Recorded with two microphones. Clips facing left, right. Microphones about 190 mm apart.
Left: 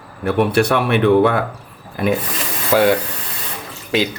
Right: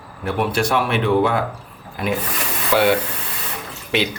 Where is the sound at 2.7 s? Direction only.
40° left (ahead or behind).